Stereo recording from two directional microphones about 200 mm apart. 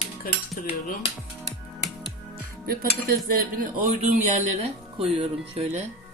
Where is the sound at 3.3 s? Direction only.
45° right (ahead or behind).